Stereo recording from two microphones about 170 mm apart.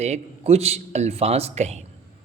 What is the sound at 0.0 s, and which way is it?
A man's voice, 40° right (ahead or behind).